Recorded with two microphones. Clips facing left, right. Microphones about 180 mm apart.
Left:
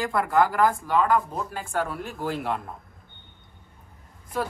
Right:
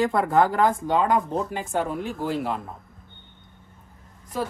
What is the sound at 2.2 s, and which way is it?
Speech, centre (ahead or behind).